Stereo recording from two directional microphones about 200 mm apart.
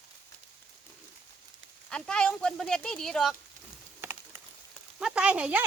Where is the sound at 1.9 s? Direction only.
5° left (ahead or behind).